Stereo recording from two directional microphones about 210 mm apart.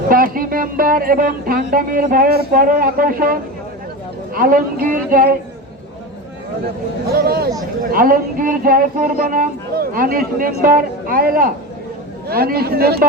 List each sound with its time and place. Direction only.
0.1 s speech: 45° right (ahead or behind)
4.4 s speech: 40° right (ahead or behind)
7.1 s speech: 45° right (ahead or behind)